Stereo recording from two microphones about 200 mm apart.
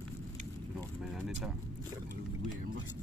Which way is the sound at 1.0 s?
Centre (ahead or behind).